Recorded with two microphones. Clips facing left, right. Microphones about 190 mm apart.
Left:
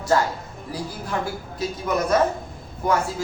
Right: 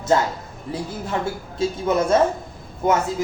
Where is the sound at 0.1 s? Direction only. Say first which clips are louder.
Right 1 dB; 20° right (ahead or behind).